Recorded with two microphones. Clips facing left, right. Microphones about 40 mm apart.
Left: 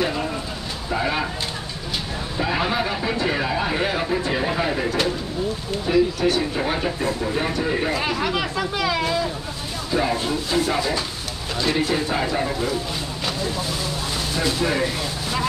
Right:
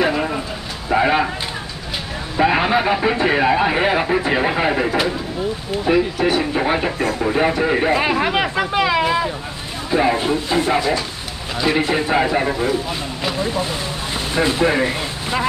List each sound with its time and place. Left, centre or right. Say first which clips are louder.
0.0 s a sound: right 5 dB; right
2.3 s speech: right 7 dB; right
4.8 s speech: right 3 dB; centre
7.0 s speech: right 5 dB; right
14.3 s speech: right 6 dB; right